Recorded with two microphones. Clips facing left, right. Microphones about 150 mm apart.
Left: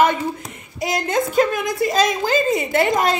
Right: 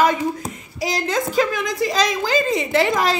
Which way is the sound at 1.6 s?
50° left (ahead or behind).